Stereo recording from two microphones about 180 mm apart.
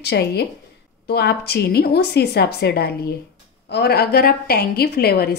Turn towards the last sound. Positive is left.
turn(degrees=60)  # may be behind; listen again after turning